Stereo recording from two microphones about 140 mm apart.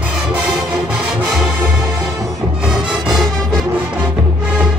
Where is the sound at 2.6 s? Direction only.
5° right (ahead or behind).